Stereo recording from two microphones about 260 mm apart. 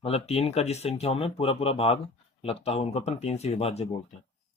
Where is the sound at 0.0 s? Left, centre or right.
Left.